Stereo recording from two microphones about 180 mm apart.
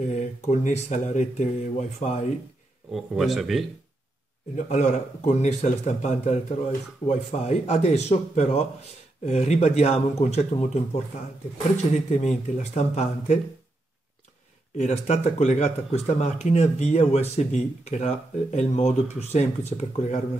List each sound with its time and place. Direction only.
0.0 s speech: 40° left (ahead or behind)
2.9 s speech: centre (ahead or behind)
4.6 s speech: 40° left (ahead or behind)
14.8 s speech: 40° left (ahead or behind)